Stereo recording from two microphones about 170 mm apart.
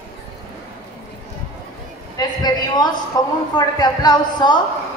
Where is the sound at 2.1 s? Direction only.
25° left (ahead or behind).